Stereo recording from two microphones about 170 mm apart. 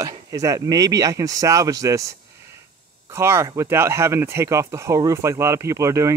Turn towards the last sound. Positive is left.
turn(degrees=-15)  # may be behind; listen again after turning